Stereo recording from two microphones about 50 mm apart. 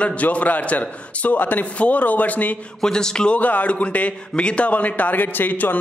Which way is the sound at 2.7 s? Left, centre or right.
Centre.